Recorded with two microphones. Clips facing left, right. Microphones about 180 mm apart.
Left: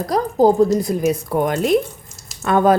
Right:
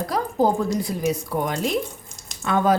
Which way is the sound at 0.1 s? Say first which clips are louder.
Left 7 dB; 40° left (ahead or behind).